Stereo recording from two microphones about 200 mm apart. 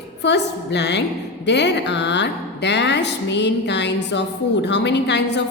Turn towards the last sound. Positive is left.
turn(degrees=60)  # may be behind; listen again after turning